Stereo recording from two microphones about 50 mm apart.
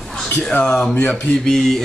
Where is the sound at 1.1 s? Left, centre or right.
Centre.